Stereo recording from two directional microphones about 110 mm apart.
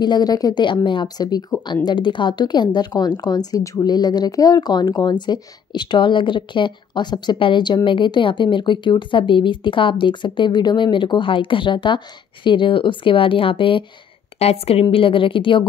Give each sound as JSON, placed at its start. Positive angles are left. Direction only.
{"t": 0.0, "sound": "a woman's voice", "side_deg": 40}
{"t": 14.4, "sound": "a woman's voice", "side_deg": 65}